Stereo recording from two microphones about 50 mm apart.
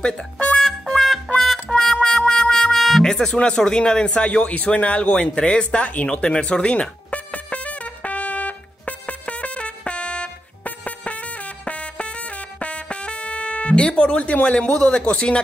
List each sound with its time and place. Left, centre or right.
0.0 s speech: left
0.6 s music: centre
3.0 s a sound: centre
11.6 s music: left